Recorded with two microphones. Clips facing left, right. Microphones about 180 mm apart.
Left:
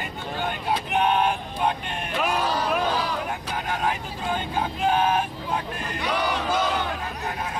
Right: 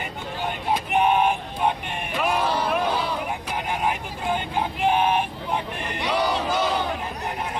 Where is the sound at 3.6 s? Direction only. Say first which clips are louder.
Right 1 dB; 15° right (ahead or behind).